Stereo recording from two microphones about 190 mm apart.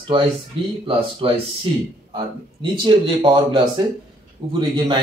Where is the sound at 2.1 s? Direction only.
25° right (ahead or behind).